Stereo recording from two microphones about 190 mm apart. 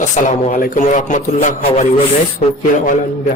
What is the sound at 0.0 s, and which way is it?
A man's voice, 40° left (ahead or behind).